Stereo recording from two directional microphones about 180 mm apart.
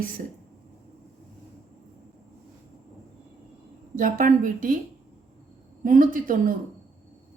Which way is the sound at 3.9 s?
45° right (ahead or behind).